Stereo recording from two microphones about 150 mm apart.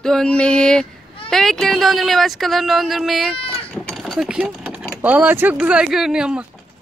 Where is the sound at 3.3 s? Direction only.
35° left (ahead or behind).